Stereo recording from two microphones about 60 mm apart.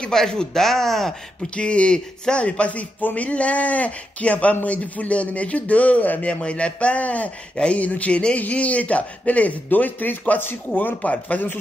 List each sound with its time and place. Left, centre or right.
0.1 s speech: centre
1.6 s speech: centre